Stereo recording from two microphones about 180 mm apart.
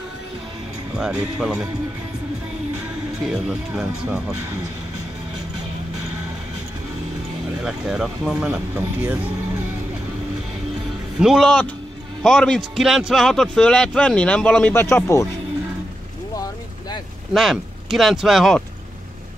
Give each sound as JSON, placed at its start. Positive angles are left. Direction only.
{"t": 0.9, "sound": "speech", "side_deg": -5}
{"t": 3.3, "sound": "a man's voice", "side_deg": -5}
{"t": 7.6, "sound": "a man's voice", "side_deg": -5}
{"t": 11.1, "sound": "a man's voice", "side_deg": 0}
{"t": 17.3, "sound": "speech", "side_deg": 0}